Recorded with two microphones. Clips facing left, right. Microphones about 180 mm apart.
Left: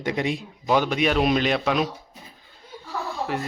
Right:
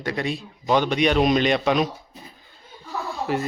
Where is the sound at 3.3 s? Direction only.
Centre (ahead or behind).